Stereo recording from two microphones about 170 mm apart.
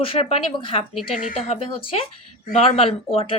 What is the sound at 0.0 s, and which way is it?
A woman's voice, 35° left (ahead or behind).